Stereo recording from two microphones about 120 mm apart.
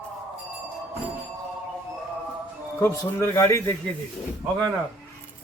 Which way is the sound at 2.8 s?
25° left (ahead or behind).